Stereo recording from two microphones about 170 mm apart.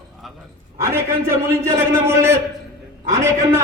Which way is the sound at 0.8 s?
15° right (ahead or behind).